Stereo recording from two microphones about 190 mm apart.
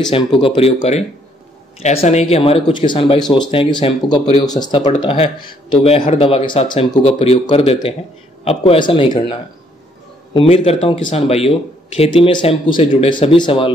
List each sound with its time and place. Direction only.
0.4 s speech: 30° left (ahead or behind)